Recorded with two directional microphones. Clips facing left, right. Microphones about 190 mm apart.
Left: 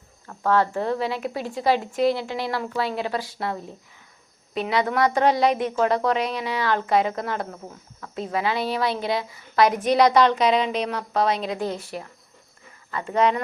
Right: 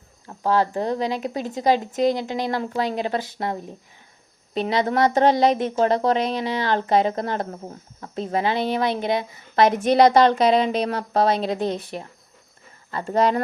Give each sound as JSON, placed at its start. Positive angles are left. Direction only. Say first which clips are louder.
{"t": 0.3, "sound": "a woman's voice", "louder": "even", "side_deg": -15}
{"t": 4.5, "sound": "a woman's voice", "louder": "right 2 dB", "side_deg": -30}
{"t": 11.6, "sound": "a woman's voice", "louder": "right 3 dB", "side_deg": -20}
{"t": 12.9, "sound": "speech", "louder": "right 1 dB", "side_deg": -35}